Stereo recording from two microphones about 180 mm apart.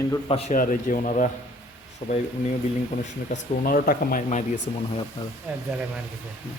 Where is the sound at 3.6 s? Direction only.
55° left (ahead or behind).